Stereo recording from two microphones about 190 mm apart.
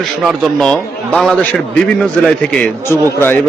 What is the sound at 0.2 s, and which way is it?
A man's voice, centre (ahead or behind).